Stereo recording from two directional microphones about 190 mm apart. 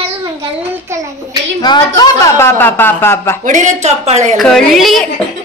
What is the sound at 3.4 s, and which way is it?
Speech, 40° right (ahead or behind).